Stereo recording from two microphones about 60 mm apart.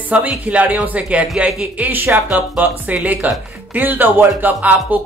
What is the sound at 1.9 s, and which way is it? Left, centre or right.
Speech, right.